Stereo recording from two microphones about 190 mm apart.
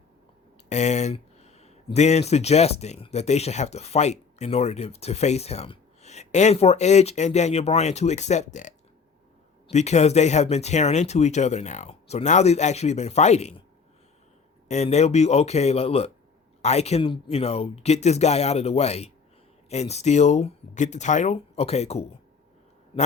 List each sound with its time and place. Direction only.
0.7 s speech: 35° left (ahead or behind)
14.7 s speech: 35° left (ahead or behind)